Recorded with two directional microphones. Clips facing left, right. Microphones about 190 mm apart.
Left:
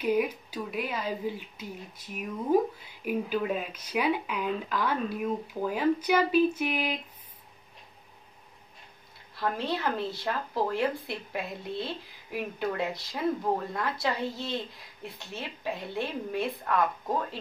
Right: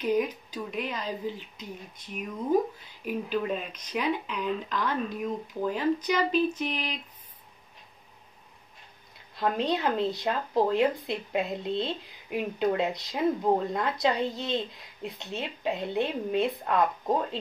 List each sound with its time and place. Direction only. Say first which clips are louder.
0.0 s speech: even; 10° left (ahead or behind)
9.3 s speech: right 3 dB; 20° right (ahead or behind)